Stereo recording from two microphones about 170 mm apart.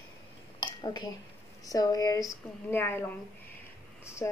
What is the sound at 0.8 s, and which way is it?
A woman's voice, 25° left (ahead or behind).